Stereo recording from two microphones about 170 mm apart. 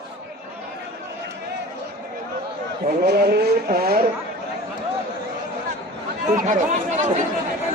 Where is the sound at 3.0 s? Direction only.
70° right (ahead or behind).